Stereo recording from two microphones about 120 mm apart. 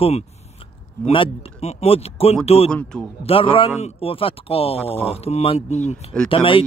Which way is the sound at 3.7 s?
55° left (ahead or behind).